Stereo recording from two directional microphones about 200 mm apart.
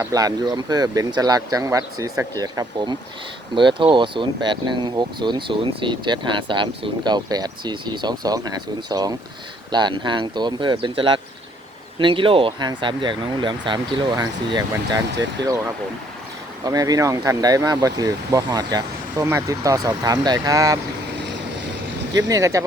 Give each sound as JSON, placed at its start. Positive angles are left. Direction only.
{"t": 0.0, "sound": "speech", "side_deg": -15}
{"t": 15.4, "sound": "speech", "side_deg": -60}
{"t": 16.6, "sound": "speech", "side_deg": -20}
{"t": 22.1, "sound": "speech", "side_deg": -15}